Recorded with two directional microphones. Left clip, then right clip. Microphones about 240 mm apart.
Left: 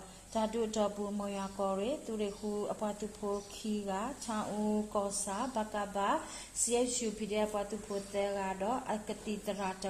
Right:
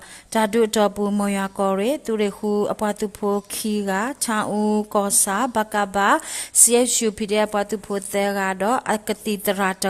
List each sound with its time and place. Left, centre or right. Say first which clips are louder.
0.3 s speech: right 15 dB; right